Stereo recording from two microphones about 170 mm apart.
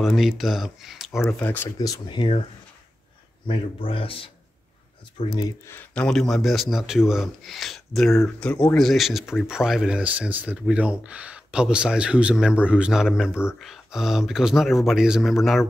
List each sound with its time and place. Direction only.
0.0 s speech: centre (ahead or behind)
1.8 s speech: 25° left (ahead or behind)
3.4 s speech: 35° left (ahead or behind)
5.7 s speech: 10° left (ahead or behind)
8.1 s speech: 10° left (ahead or behind); by 13.3 s 5° right (ahead or behind)
13.3 s speech: 15° left (ahead or behind)
13.6 s speech: centre (ahead or behind)